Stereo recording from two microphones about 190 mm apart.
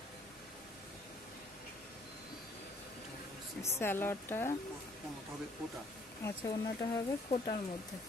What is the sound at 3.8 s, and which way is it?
Speech, 10° left (ahead or behind).